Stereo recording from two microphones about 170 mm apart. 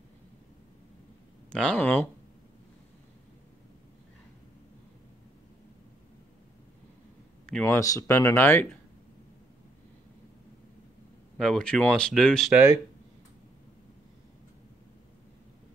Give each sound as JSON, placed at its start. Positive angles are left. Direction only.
{"t": 1.5, "sound": "speech", "side_deg": 5}
{"t": 7.6, "sound": "speech", "side_deg": 15}
{"t": 11.3, "sound": "speech", "side_deg": 5}
{"t": 12.5, "sound": "speech", "side_deg": -20}